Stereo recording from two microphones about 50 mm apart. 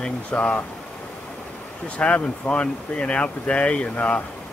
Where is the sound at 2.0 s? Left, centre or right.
Left.